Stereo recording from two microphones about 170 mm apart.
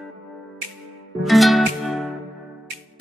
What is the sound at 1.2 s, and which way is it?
Music, centre (ahead or behind).